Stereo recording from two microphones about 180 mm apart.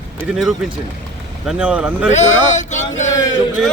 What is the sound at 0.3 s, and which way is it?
Speech, centre (ahead or behind).